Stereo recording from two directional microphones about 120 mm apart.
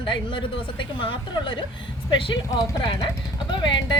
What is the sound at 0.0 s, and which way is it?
A woman's voice, 45° left (ahead or behind).